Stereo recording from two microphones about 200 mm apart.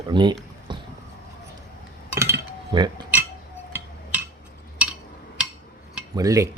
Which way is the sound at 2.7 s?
20° right (ahead or behind).